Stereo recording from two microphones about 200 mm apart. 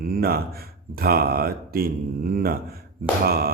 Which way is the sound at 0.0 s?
50° right (ahead or behind).